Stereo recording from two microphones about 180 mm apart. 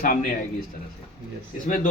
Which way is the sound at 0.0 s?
50° left (ahead or behind).